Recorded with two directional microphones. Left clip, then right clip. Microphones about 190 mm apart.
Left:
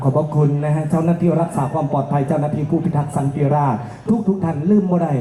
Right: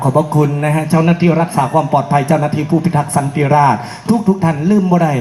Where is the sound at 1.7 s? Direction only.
35° right (ahead or behind).